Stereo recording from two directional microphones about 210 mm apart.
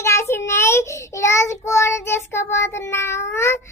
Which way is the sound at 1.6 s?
15° left (ahead or behind).